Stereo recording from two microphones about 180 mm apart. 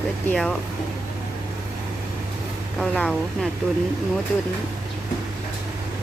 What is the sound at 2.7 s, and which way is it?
Speech, 5° left (ahead or behind).